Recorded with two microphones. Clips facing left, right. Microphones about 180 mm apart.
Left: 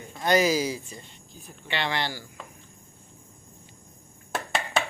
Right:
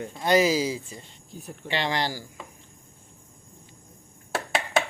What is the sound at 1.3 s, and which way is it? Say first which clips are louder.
Speech: right 11 dB; 70° right (ahead or behind).